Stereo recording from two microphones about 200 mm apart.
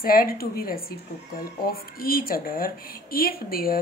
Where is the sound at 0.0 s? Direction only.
45° left (ahead or behind).